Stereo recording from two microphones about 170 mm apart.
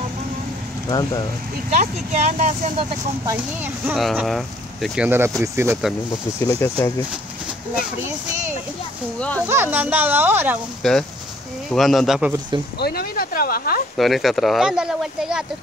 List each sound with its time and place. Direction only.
0.8 s speech: 25° left (ahead or behind)
1.8 s speech: 45° right (ahead or behind)
3.6 s speech: centre (ahead or behind)
6.4 s speech: 15° left (ahead or behind)
9.5 s speech: 10° right (ahead or behind)
10.8 s speech: 5° left (ahead or behind)
12.7 s speech: 65° left (ahead or behind)
13.9 s speech: centre (ahead or behind)